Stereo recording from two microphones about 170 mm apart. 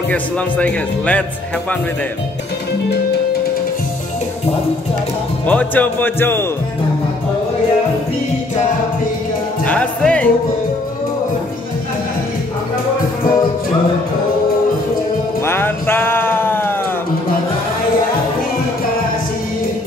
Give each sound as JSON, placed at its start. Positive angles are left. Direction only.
{"t": 0.1, "sound": "speech", "side_deg": 10}
{"t": 5.5, "sound": "speech", "side_deg": 10}
{"t": 9.7, "sound": "speech", "side_deg": 5}
{"t": 15.4, "sound": "a sound", "side_deg": 15}